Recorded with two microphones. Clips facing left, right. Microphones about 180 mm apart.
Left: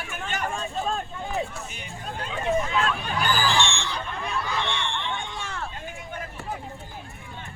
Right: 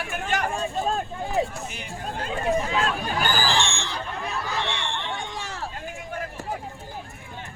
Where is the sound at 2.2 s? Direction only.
40° right (ahead or behind).